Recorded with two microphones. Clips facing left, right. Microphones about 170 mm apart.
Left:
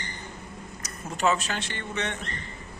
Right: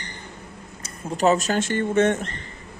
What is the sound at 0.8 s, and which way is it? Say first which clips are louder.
Speech: right 6 dB; 35° right (ahead or behind).